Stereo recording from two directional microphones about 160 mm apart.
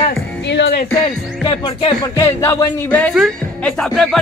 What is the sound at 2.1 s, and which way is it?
Speech, 15° left (ahead or behind).